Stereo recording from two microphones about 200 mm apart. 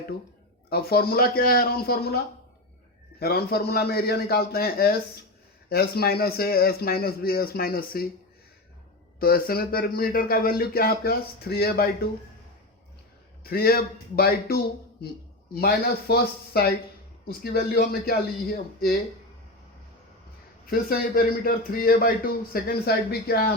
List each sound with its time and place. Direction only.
0.7 s a man's voice: 50° left (ahead or behind)
9.1 s a man's voice: 50° left (ahead or behind)
13.4 s a man's voice: 50° left (ahead or behind)
20.7 s a man's voice: 50° left (ahead or behind)